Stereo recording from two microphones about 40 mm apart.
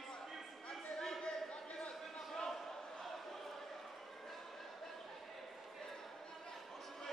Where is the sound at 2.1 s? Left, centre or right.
Centre.